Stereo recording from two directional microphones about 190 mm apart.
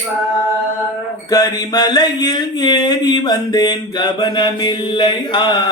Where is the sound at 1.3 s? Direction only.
20° left (ahead or behind).